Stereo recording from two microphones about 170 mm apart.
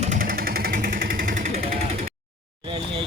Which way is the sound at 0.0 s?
50° right (ahead or behind).